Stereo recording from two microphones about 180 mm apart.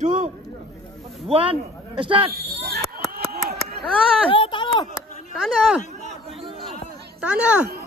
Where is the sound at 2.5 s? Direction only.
60° right (ahead or behind).